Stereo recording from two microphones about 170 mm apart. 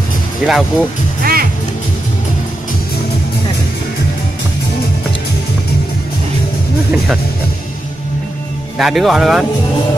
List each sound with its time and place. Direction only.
0.5 s speech: centre (ahead or behind)
1.2 s music: 60° right (ahead or behind)
8.7 s speech: centre (ahead or behind)